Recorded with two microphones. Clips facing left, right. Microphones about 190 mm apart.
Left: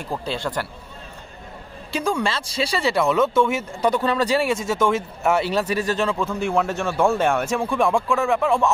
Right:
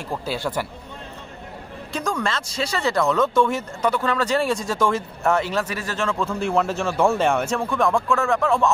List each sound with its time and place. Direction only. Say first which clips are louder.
0.1 s speech: even; 5° right (ahead or behind)
1.9 s a man's voice: left 2 dB; 10° left (ahead or behind)
3.9 s a man's voice: left 2 dB; 15° left (ahead or behind)
6.2 s speech: even; centre (ahead or behind)